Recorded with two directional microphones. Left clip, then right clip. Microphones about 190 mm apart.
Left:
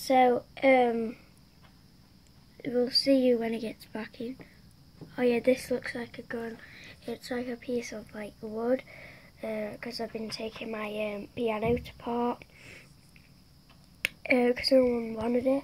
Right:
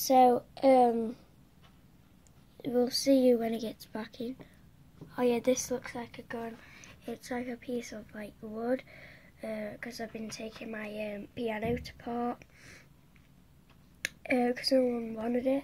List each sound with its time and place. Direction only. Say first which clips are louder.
0.0 s speech: even; 20° right (ahead or behind)
2.6 s a woman's voice: left 2 dB; 25° right (ahead or behind); by 12.8 s 10° left (ahead or behind)
14.2 s speech: left 4 dB; 10° left (ahead or behind)